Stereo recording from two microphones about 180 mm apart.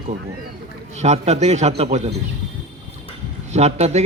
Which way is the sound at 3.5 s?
40° right (ahead or behind).